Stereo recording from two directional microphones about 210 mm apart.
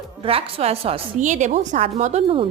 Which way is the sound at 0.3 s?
25° right (ahead or behind).